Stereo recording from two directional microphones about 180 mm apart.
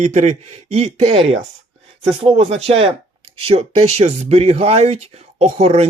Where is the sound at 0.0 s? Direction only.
40° right (ahead or behind).